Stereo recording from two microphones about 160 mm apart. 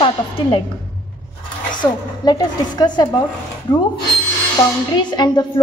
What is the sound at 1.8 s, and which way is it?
A woman's voice, 25° left (ahead or behind).